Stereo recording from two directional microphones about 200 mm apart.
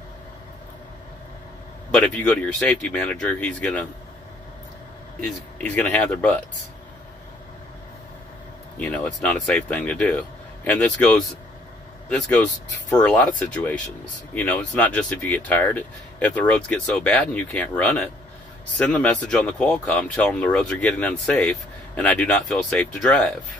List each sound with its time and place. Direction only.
1.9 s speech: 5° left (ahead or behind)
5.2 s speech: 5° left (ahead or behind)
8.7 s speech: 5° left (ahead or behind)
12.2 s speech: 5° left (ahead or behind)